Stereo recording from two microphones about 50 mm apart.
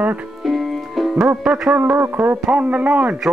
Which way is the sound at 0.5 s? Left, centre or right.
Centre.